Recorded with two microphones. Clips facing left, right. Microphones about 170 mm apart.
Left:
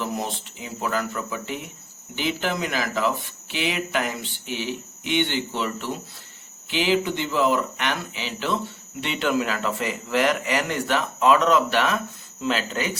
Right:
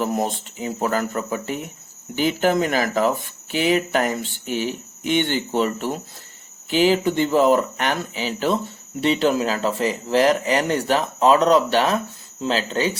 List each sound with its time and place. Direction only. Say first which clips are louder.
0.0 s speech: right 6 dB; 45° right (ahead or behind)